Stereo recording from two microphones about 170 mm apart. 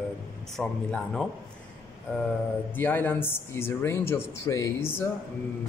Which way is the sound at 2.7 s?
10° left (ahead or behind).